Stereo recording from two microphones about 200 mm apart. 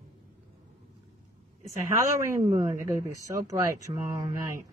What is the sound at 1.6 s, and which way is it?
Speech, 15° right (ahead or behind).